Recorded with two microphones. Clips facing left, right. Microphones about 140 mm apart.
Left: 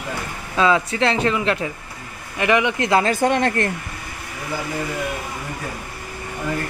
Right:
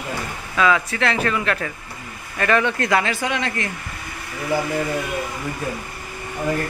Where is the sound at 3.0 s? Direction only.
50° left (ahead or behind).